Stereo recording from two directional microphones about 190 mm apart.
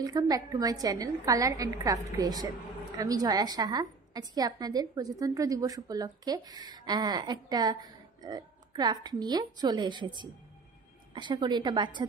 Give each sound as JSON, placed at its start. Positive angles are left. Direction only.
{"t": 0.0, "sound": "a woman's voice", "side_deg": -20}